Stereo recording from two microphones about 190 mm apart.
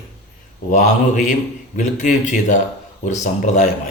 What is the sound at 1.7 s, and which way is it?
Speech, 40° left (ahead or behind).